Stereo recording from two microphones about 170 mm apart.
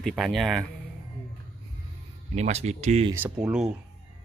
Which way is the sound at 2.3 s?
40° right (ahead or behind).